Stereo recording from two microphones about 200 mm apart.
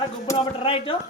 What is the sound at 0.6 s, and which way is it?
Speech, 30° left (ahead or behind).